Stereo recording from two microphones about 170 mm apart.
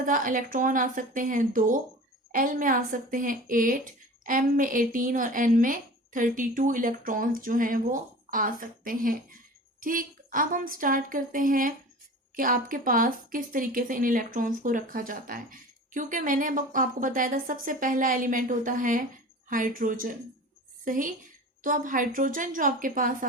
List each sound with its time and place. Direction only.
0.0 s a woman's voice: 55° right (ahead or behind)